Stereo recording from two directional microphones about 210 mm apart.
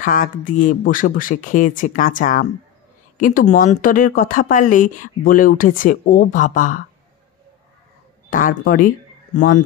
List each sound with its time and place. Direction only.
0.0 s speech: 40° left (ahead or behind)
8.3 s speech: 40° left (ahead or behind)